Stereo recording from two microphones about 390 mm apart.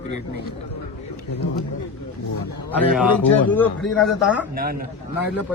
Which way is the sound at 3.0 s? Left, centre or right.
Centre.